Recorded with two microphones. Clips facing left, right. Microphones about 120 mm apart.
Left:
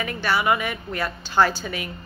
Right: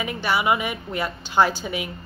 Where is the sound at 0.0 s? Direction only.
15° right (ahead or behind).